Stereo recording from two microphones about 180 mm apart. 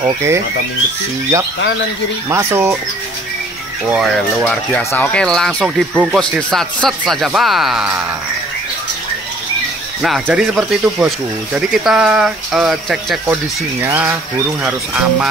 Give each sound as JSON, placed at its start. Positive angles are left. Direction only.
{"t": 0.0, "sound": "speech", "side_deg": -15}
{"t": 2.2, "sound": "speech", "side_deg": -15}
{"t": 3.9, "sound": "speech", "side_deg": 0}
{"t": 10.0, "sound": "speech", "side_deg": -5}